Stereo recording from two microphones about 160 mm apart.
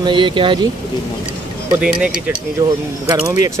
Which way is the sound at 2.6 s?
20° right (ahead or behind).